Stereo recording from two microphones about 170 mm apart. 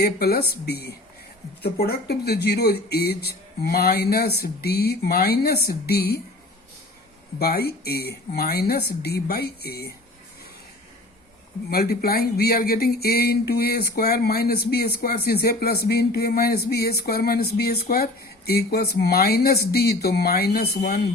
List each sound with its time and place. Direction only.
0.0 s speech: 70° left (ahead or behind)
7.3 s speech: 65° left (ahead or behind)
11.7 s speech: 65° left (ahead or behind)